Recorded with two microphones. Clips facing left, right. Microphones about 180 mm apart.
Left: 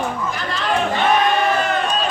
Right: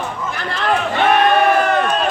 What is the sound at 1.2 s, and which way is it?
Crowd, 55° right (ahead or behind).